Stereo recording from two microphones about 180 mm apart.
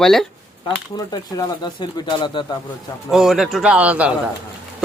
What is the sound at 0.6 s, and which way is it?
Speech, 20° left (ahead or behind).